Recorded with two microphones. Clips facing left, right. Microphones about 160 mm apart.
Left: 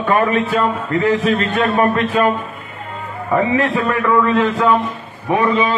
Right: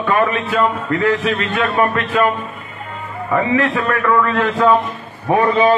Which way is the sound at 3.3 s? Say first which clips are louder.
Left 1 dB; 15° left (ahead or behind).